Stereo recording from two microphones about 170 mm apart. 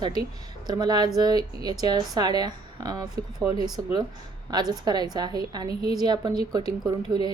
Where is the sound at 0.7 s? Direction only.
25° right (ahead or behind).